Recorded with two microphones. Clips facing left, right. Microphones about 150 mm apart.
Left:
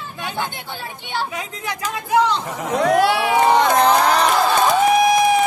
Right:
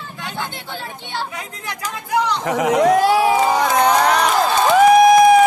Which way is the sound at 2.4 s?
90° right.